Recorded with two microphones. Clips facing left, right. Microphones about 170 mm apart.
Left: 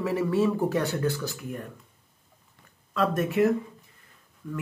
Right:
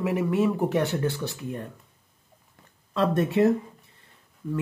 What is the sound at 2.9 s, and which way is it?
Speech, 30° right (ahead or behind).